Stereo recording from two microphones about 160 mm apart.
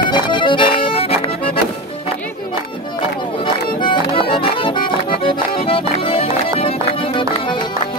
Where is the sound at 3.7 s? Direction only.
35° left (ahead or behind).